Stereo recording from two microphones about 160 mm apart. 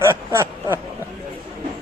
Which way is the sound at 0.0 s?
15° right (ahead or behind).